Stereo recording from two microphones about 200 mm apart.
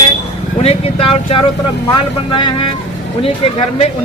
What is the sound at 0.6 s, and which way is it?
Vehicle, 30° left (ahead or behind).